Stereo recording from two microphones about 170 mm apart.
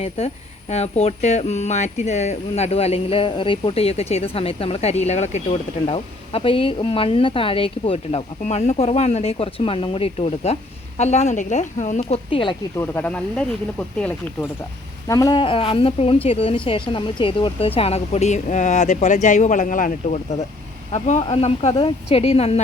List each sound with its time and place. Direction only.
0.7 s speech: 40° left (ahead or behind)
12.7 s speech: 15° left (ahead or behind); by 22.6 s 35° left (ahead or behind)